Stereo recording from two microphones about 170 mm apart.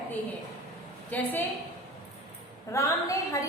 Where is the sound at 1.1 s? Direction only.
10° left (ahead or behind).